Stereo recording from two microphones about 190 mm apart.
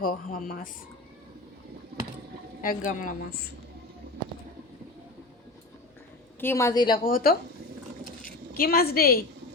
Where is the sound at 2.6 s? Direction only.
45° left (ahead or behind).